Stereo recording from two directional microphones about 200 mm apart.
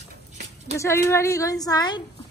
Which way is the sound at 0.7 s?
15° left (ahead or behind).